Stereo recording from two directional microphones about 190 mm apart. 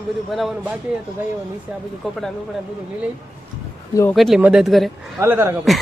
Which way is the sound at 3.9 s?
15° left (ahead or behind).